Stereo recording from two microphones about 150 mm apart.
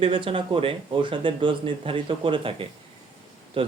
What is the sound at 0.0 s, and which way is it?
Speech, 35° right (ahead or behind).